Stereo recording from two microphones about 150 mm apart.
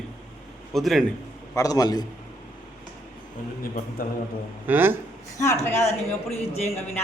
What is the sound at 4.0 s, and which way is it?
Speech, 80° left.